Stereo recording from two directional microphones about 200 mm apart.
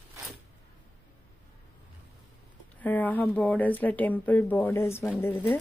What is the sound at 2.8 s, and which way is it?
Speech, 10° left (ahead or behind).